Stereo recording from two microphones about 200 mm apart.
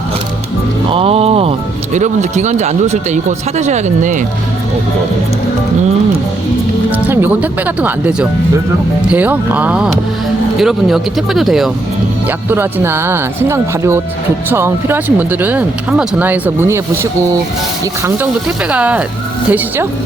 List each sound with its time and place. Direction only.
0.9 s speech: 30° right (ahead or behind)
6.9 s speech: 10° right (ahead or behind)
12.5 s speech: 10° right (ahead or behind)